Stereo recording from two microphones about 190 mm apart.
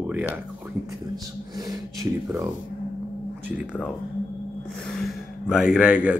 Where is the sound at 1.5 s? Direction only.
20° right (ahead or behind).